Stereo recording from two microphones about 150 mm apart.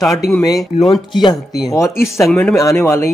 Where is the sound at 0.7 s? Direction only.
50° left (ahead or behind).